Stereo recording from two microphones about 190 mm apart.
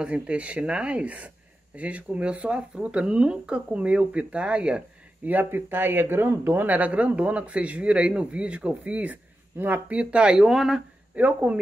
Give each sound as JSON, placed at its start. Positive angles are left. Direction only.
{"t": 0.0, "sound": "speech", "side_deg": -5}